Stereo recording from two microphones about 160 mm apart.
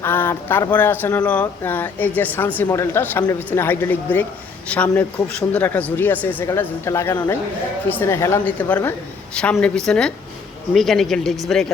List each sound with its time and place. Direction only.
0.0 s speech: 15° left (ahead or behind)